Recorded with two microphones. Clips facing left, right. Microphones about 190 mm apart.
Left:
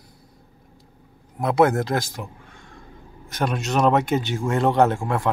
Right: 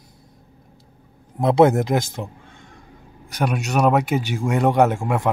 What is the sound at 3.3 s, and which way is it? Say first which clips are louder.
Speech: right 1 dB; 10° right (ahead or behind).